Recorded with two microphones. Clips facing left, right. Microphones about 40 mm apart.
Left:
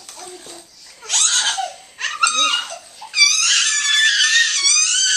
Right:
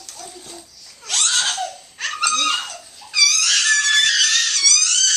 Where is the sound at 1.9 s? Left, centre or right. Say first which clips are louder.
Left 3 dB; centre.